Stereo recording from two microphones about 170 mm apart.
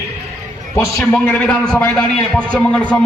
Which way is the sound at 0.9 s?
10° left (ahead or behind).